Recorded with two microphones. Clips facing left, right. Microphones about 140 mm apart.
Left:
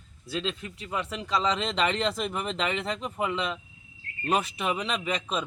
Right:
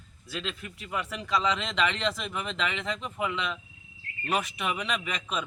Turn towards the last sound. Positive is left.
turn(degrees=30)  # may be behind; listen again after turning